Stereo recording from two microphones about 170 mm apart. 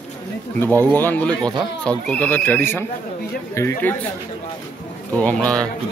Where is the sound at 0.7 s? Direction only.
10° left (ahead or behind).